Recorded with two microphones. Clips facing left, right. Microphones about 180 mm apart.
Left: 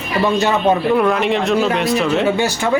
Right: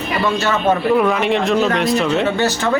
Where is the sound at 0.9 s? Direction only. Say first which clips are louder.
Even; centre (ahead or behind).